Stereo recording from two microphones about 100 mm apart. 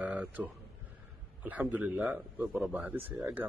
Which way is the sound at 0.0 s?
15° right (ahead or behind).